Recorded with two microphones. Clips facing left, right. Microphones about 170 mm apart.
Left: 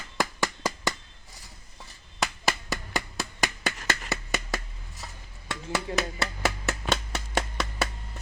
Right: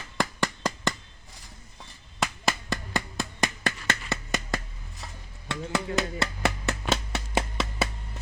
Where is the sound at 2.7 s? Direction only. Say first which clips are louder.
Right 1 dB; 5° left (ahead or behind).